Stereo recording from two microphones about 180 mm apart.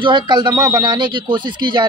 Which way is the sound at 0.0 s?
25° right (ahead or behind).